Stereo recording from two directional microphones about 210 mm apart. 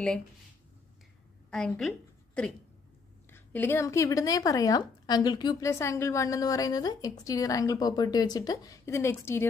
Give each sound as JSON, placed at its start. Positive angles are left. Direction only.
{"t": 1.5, "sound": "a woman's voice", "side_deg": 0}